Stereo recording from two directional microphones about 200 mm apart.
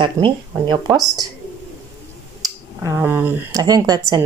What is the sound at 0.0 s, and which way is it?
Speech, 20° right (ahead or behind).